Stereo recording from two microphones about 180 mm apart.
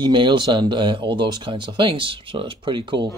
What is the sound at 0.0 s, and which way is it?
Speech, 25° right (ahead or behind).